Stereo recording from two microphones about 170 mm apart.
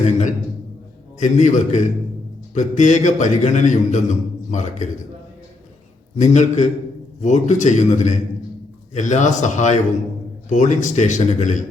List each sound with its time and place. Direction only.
0.0 s a sound: 45° left (ahead or behind)
1.2 s a man's voice: 45° left (ahead or behind)
6.1 s a man's voice: 45° left (ahead or behind)